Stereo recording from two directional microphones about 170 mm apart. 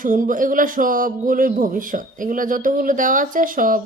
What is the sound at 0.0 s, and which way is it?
Speech, 50° right (ahead or behind).